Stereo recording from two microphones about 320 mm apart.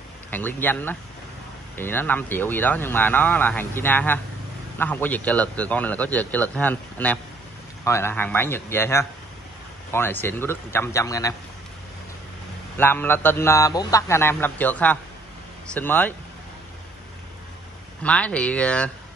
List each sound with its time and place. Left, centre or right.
0.3 s a man's voice: centre
12.7 s a man's voice: centre
18.0 s speech: centre